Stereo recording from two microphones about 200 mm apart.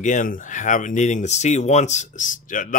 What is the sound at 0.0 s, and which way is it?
Speech, 40° left (ahead or behind).